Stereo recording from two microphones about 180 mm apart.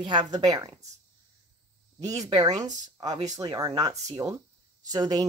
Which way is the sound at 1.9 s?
20° right (ahead or behind).